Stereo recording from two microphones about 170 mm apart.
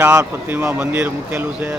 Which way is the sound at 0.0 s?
10° right (ahead or behind).